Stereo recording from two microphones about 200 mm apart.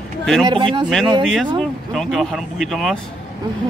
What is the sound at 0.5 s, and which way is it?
Speech, 25° right (ahead or behind).